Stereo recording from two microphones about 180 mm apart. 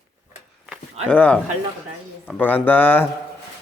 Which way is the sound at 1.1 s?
10° left (ahead or behind).